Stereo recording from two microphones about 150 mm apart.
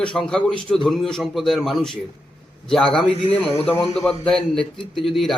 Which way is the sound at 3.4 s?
40° left (ahead or behind).